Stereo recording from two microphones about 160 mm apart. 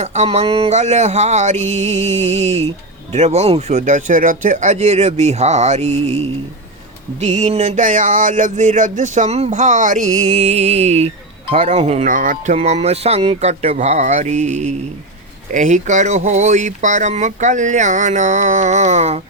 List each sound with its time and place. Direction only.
0.0 s speech: 45° right (ahead or behind)
10.3 s speech: 40° right (ahead or behind)
12.1 s speech: 55° right (ahead or behind)
12.5 s speech: 45° right (ahead or behind)